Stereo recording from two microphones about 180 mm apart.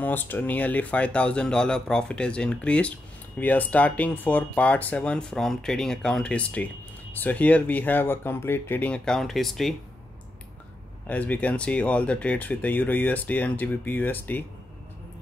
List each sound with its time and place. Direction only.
0.0 s speech: 10° left (ahead or behind)
11.1 s speech: 10° left (ahead or behind)